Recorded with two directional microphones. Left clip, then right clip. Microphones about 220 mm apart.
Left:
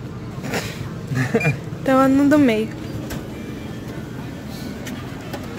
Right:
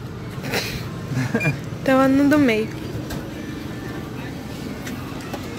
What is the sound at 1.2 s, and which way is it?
Speech, 45° left (ahead or behind).